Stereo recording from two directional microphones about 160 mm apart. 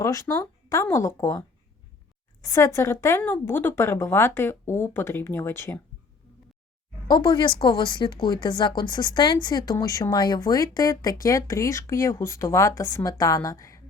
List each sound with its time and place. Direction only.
0.0 s speech: 20° left (ahead or behind)
7.1 s speech: 25° left (ahead or behind)